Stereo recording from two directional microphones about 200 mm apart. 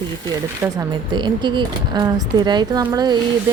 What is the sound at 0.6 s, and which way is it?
Speech, 10° right (ahead or behind).